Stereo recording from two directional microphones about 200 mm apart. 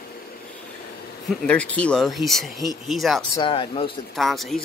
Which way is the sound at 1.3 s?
5° left (ahead or behind).